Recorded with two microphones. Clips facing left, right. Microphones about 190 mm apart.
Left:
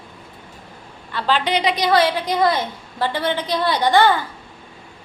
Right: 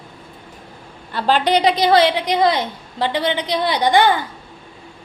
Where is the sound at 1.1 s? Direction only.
45° right (ahead or behind); by 4.2 s 15° right (ahead or behind).